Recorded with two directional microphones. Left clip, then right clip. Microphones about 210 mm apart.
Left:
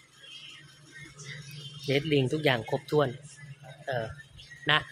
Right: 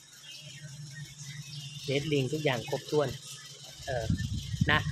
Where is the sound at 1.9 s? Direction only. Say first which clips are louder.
Left 4 dB; 25° left (ahead or behind).